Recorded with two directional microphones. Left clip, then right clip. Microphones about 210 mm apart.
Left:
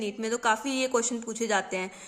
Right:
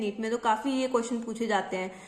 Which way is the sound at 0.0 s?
30° left (ahead or behind).